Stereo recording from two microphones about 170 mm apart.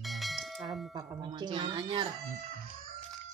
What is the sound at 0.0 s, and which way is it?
Bell, centre (ahead or behind).